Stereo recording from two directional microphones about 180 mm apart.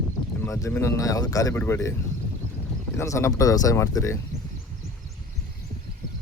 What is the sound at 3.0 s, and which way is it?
Speech, 15° left (ahead or behind).